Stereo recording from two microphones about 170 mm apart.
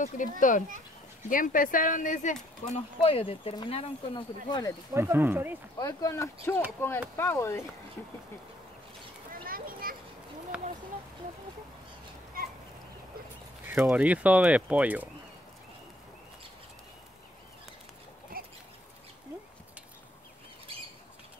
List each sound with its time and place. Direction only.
0.4 s speech: 50° left (ahead or behind)
3.0 s speech: 35° left (ahead or behind)
4.9 s speech: 15° right (ahead or behind)
5.8 s speech: 20° left (ahead or behind)
9.3 s children playing: 55° right (ahead or behind)
10.5 s a sound: 5° right (ahead or behind)
12.4 s a sound: 60° right (ahead or behind)
13.8 s speech: 10° right (ahead or behind)
18.4 s goat: 60° right (ahead or behind)